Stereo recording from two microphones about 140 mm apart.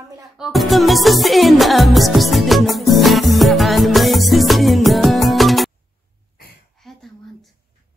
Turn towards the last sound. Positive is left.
turn(degrees=0)  # may be behind; listen again after turning